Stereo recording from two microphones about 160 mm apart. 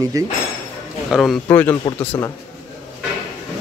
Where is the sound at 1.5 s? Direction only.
10° left (ahead or behind).